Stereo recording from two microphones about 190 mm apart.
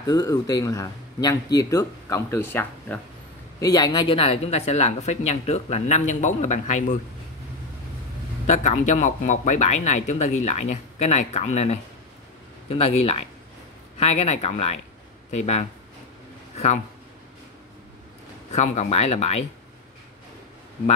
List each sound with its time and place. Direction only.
0.0 s a man's voice: 20° left (ahead or behind)
3.6 s speech: 20° left (ahead or behind); by 7.0 s 40° left (ahead or behind)
8.5 s speech: 40° left (ahead or behind)
18.5 s speech: 35° left (ahead or behind)